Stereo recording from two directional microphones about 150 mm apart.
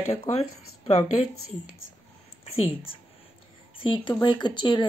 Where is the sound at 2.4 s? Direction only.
40° left (ahead or behind).